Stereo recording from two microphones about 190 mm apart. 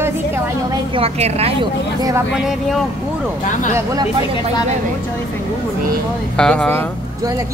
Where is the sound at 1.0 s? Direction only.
35° right (ahead or behind).